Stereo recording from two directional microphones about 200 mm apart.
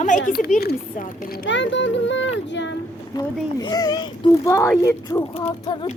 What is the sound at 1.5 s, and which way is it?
Speech, 65° left (ahead or behind).